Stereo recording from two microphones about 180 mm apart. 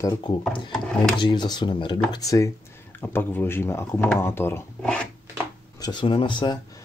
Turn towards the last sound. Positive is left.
turn(degrees=25)  # may be behind; listen again after turning